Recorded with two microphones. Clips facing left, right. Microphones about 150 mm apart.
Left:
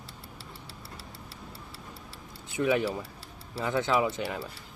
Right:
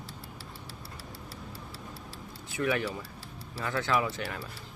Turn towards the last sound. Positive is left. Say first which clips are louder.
# left 3 dB
turn(degrees=20)  # may be behind; listen again after turning